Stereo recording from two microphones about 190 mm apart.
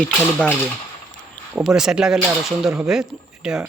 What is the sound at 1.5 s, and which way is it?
Speech, 5° right (ahead or behind).